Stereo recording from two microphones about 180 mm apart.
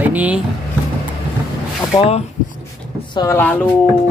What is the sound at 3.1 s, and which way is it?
Speech, 15° left (ahead or behind).